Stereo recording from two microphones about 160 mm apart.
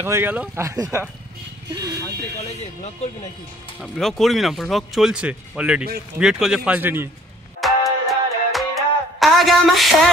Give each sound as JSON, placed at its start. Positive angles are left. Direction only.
{"t": 0.0, "sound": "speech", "side_deg": -15}
{"t": 3.8, "sound": "speech", "side_deg": 0}
{"t": 7.6, "sound": "music", "side_deg": 0}